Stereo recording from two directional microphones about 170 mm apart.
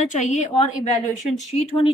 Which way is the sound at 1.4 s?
40° left (ahead or behind).